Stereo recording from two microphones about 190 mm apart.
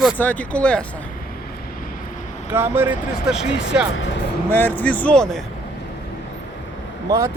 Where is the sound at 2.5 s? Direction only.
10° right (ahead or behind).